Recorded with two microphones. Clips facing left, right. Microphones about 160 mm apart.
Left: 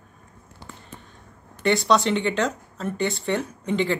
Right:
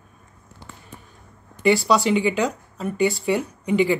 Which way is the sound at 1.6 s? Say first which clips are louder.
Right 2 dB; 5° right (ahead or behind).